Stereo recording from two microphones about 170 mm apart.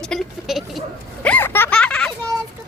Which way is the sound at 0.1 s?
Centre (ahead or behind).